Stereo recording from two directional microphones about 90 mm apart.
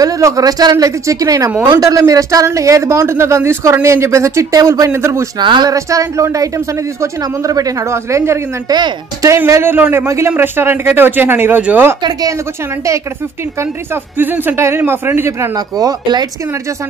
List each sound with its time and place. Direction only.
0.0 s speech: 45° right (ahead or behind)
5.4 s speech: 60° right (ahead or behind)
5.7 s speech: 40° right (ahead or behind)
8.6 s speech: 55° right (ahead or behind)
9.5 s a man's voice: 25° right (ahead or behind)
12.0 s speech: 40° right (ahead or behind)
14.1 s a man's voice: 20° right (ahead or behind)
15.5 s speech: 45° right (ahead or behind)